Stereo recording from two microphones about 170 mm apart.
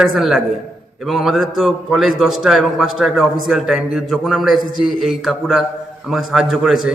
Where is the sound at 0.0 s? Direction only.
Centre (ahead or behind).